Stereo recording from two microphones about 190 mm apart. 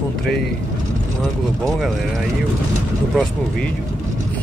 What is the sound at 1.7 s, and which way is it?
Speech, centre (ahead or behind).